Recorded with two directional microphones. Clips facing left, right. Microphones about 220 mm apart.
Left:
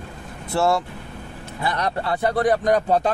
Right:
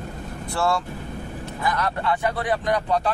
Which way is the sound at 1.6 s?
35° left (ahead or behind).